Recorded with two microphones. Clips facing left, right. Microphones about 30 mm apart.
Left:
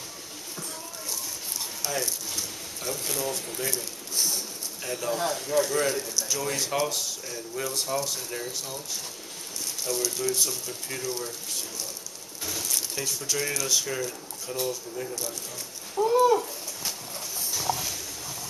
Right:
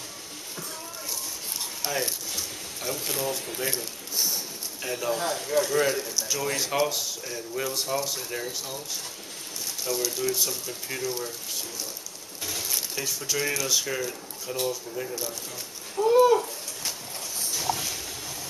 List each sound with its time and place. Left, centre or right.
1.8 s speech: right
2.3 s speech: centre
4.8 s speech: centre
9.8 s speech: centre
12.4 s speech: centre
16.1 s a sound: centre